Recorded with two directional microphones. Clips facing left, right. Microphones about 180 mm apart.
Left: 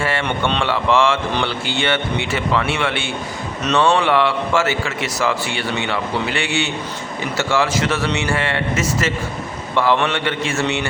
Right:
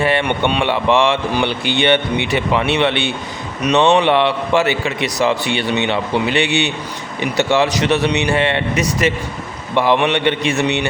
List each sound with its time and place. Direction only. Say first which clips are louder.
0.0 s a man's voice: right 4 dB; 15° right (ahead or behind)